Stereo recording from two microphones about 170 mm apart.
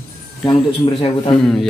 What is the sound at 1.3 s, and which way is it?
Speech, 5° left (ahead or behind).